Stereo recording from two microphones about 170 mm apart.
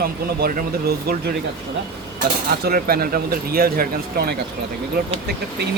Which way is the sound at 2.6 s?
65° right (ahead or behind).